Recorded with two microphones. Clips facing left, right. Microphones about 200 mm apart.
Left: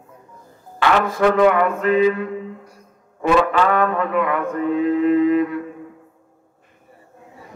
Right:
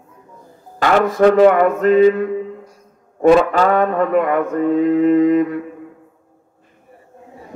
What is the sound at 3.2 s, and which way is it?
Mantra, 40° right (ahead or behind).